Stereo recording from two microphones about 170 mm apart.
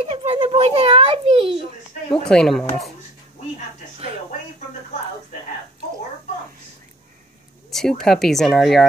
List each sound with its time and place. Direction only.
0.0 s a sound: 40° right (ahead or behind)
2.2 s speech: centre (ahead or behind)
7.7 s speech: centre (ahead or behind)